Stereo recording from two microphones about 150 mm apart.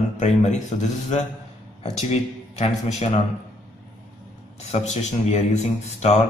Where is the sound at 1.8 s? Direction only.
45° left (ahead or behind).